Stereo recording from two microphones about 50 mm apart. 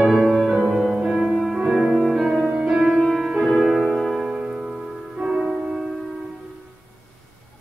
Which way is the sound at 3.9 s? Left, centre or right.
Centre.